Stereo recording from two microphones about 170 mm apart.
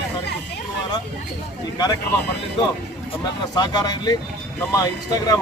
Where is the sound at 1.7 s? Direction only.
25° left (ahead or behind).